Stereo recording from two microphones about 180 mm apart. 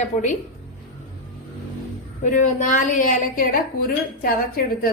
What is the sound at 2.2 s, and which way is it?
A woman's voice, 45° left (ahead or behind).